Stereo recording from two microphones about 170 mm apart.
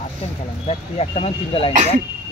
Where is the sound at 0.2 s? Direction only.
40° left (ahead or behind).